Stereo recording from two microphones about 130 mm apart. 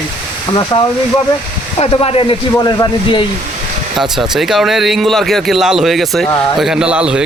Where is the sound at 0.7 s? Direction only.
40° left (ahead or behind).